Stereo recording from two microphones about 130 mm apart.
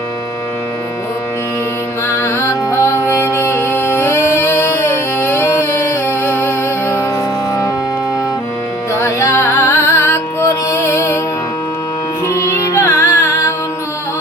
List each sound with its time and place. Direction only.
2.0 s music: 20° left (ahead or behind)
8.9 s music: 20° left (ahead or behind)
12.3 s music: 20° left (ahead or behind)